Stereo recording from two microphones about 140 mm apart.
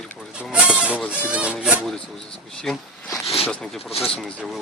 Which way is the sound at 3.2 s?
45° left (ahead or behind).